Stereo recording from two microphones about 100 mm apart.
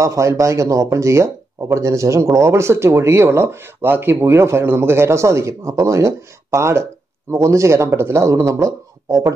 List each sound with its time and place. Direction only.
0.0 s speech: 30° right (ahead or behind)